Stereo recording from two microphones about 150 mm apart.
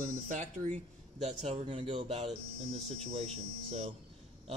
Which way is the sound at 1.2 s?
45° right (ahead or behind).